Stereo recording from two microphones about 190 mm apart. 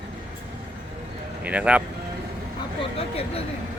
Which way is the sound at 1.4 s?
5° right (ahead or behind).